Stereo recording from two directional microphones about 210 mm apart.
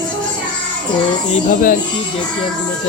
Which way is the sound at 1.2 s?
35° left (ahead or behind).